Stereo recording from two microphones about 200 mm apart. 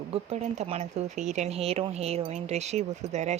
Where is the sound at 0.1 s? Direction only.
30° right (ahead or behind).